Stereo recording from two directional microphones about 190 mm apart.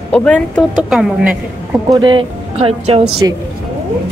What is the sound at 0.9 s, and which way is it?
Speech, 5° right (ahead or behind).